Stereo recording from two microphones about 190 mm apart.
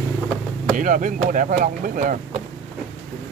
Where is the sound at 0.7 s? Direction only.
45° right (ahead or behind).